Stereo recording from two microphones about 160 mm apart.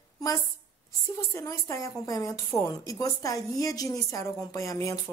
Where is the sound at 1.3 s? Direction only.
20° left (ahead or behind).